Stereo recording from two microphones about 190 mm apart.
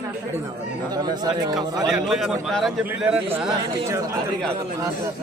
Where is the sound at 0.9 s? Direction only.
20° right (ahead or behind).